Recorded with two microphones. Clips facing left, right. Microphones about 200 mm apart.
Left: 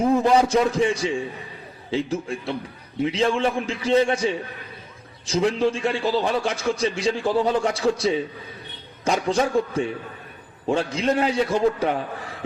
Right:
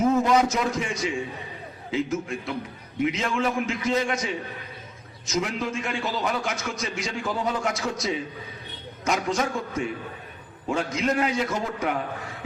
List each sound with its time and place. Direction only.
0.2 s a man's voice: 30° left (ahead or behind)